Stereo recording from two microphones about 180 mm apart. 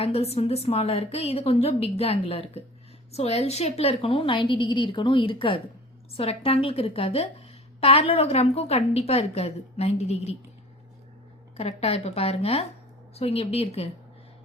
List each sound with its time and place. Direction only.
0.0 s a woman's voice: 35° left (ahead or behind)
11.5 s a woman's voice: 35° left (ahead or behind)